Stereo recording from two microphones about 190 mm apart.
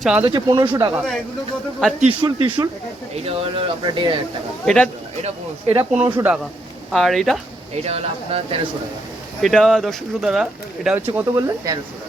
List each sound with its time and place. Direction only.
0.0 s speech: 5° right (ahead or behind)
0.3 s speech: 20° right (ahead or behind)
2.2 s speech: 20° right (ahead or behind)
4.6 s speech: 5° left (ahead or behind)
5.2 s speech: 35° right (ahead or behind)
6.0 s speech: 10° right (ahead or behind)
7.9 s speech: 30° right (ahead or behind)
9.4 s speech: centre (ahead or behind); by 11.8 s 20° right (ahead or behind)